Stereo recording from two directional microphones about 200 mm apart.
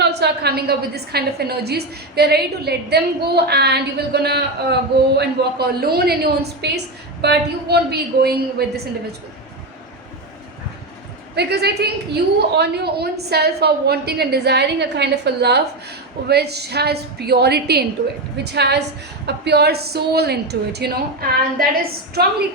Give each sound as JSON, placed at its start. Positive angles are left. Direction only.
{"t": 0.0, "sound": "a woman's voice", "side_deg": -55}
{"t": 11.3, "sound": "a woman's voice", "side_deg": -55}